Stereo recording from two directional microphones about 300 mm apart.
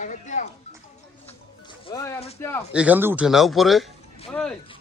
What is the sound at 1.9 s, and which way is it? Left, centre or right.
Music, centre.